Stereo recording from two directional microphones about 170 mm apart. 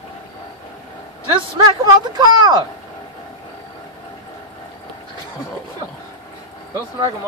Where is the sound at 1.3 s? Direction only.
25° right (ahead or behind).